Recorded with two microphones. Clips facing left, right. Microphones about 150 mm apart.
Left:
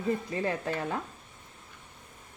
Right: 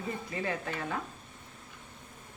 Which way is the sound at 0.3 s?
30° left (ahead or behind).